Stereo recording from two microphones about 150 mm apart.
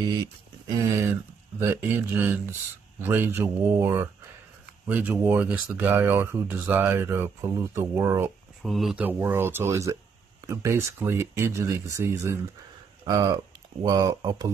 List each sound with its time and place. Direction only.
0.0 s speech: 25° right (ahead or behind)
8.6 s speech: centre (ahead or behind); by 14.5 s 25° right (ahead or behind)